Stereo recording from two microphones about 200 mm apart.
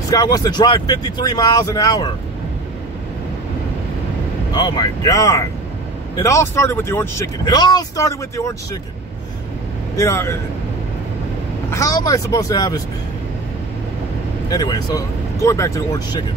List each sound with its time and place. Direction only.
0.1 s speech: 20° left (ahead or behind)
4.5 s speech: 20° left (ahead or behind)
9.9 s speech: 15° left (ahead or behind)
11.7 s speech: 15° left (ahead or behind)
14.5 s speech: 20° left (ahead or behind)